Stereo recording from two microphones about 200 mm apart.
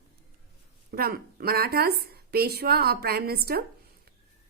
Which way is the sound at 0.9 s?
50° right (ahead or behind).